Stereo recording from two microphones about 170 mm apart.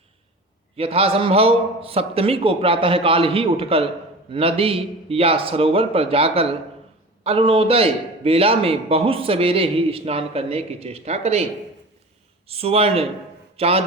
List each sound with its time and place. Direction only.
0.8 s a man's voice: 35° right (ahead or behind)
12.5 s a man's voice: 35° right (ahead or behind)